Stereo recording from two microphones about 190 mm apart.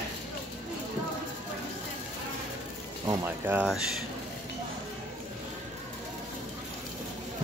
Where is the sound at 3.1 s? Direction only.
10° right (ahead or behind).